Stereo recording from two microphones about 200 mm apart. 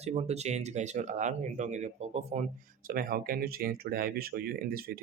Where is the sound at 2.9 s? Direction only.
45° right (ahead or behind).